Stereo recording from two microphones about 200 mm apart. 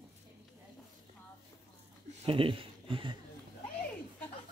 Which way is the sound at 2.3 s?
25° right (ahead or behind).